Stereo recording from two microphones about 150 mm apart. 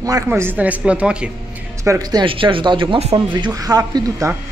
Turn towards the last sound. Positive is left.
turn(degrees=-20)  # may be behind; listen again after turning